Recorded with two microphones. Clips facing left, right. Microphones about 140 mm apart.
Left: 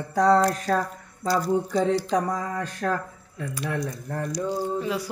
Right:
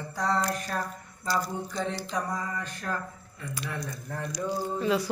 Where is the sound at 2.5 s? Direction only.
90° left.